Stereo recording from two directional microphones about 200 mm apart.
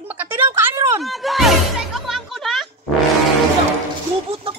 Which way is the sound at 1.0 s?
Centre (ahead or behind).